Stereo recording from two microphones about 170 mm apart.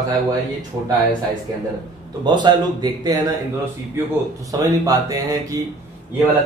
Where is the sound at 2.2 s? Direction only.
25° right (ahead or behind).